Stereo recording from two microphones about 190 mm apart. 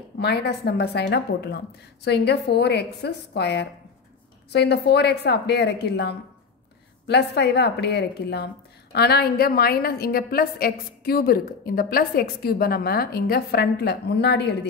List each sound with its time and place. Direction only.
0.2 s a woman's voice: 60° left (ahead or behind)